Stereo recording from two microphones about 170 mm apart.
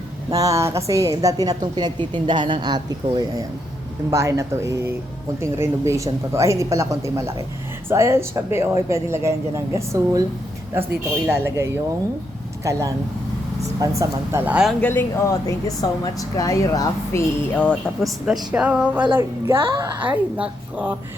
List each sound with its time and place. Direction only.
0.3 s a woman's voice: 20° right (ahead or behind)
11.3 s speech: 15° right (ahead or behind)
14.8 s speech: 10° left (ahead or behind); by 19.0 s 10° right (ahead or behind)
19.5 s a woman's voice: 30° right (ahead or behind)
20.0 s speech: 10° right (ahead or behind)